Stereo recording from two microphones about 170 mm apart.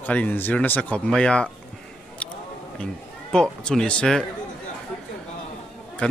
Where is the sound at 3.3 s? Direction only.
5° left (ahead or behind).